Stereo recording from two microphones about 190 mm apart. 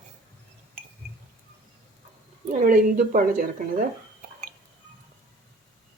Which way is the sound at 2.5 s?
45° right (ahead or behind).